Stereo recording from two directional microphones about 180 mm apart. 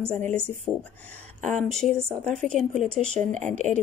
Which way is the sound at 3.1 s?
40° right (ahead or behind).